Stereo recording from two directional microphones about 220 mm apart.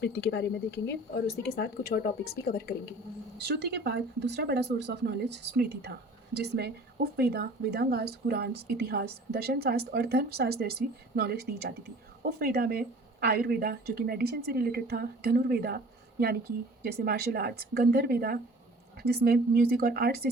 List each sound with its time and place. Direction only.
0.0 s speech: 50° left (ahead or behind)
3.4 s speech: 50° right (ahead or behind)
16.8 s speech: 45° right (ahead or behind)